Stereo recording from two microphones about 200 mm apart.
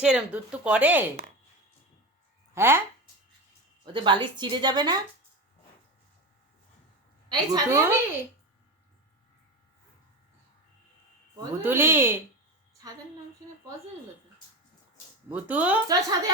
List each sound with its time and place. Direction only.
0.0 s speech: 5° right (ahead or behind)
2.6 s speech: 10° right (ahead or behind)
3.9 s a woman's voice: 25° right (ahead or behind)
7.3 s speech: 15° right (ahead or behind)
11.3 s speech: 10° right (ahead or behind)
15.3 s speech: 5° right (ahead or behind)
15.9 s a woman's voice: 20° right (ahead or behind)